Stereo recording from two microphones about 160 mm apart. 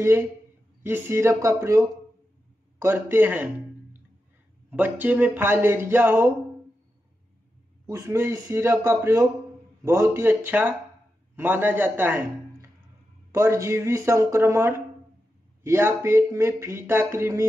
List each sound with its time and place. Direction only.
0.8 s speech: 15° right (ahead or behind)
7.8 s speech: 15° right (ahead or behind)
13.3 s speech: 15° right (ahead or behind)